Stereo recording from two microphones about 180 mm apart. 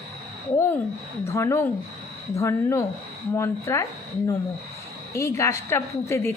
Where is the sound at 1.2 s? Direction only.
15° left (ahead or behind).